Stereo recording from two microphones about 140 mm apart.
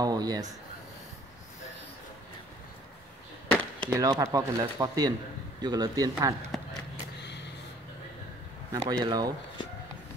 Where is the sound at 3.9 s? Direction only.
25° right (ahead or behind).